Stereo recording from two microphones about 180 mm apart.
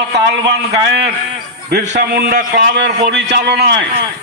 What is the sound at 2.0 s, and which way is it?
A man's voice, 55° right (ahead or behind).